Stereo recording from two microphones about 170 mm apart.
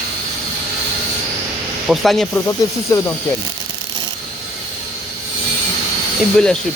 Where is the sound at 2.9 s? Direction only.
20° left (ahead or behind).